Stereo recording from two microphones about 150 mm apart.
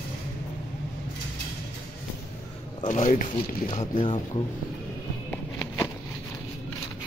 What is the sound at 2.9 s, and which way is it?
Speech, 55° left (ahead or behind).